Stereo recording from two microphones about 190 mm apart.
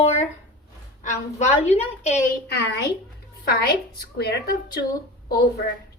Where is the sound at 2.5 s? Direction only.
60° left (ahead or behind).